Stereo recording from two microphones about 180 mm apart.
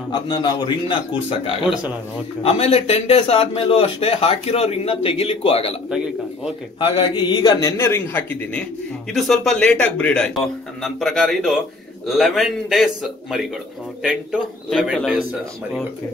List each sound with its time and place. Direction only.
0.1 s a man's voice: 25° left (ahead or behind)
2.4 s speech: 35° left (ahead or behind)
5.9 s a man's voice: 5° right (ahead or behind)
6.8 s a man's voice: 30° left (ahead or behind); by 13.5 s centre (ahead or behind)
14.7 s a man's voice: centre (ahead or behind)